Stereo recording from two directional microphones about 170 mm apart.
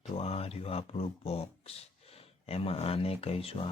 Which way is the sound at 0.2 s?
35° left (ahead or behind).